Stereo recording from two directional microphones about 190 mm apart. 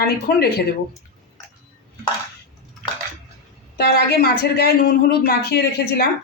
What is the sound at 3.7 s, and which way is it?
A woman's voice, 55° left (ahead or behind).